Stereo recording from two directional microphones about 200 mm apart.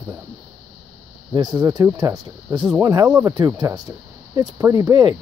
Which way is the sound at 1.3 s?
20° right (ahead or behind).